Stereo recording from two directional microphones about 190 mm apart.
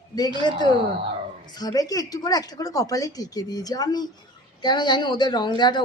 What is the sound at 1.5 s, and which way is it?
Speech, 20° left (ahead or behind).